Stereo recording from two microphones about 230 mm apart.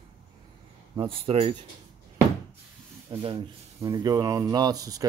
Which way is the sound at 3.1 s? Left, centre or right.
Right.